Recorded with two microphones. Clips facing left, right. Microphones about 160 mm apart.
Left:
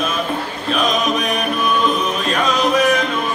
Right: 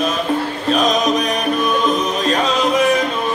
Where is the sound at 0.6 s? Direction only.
40° right (ahead or behind).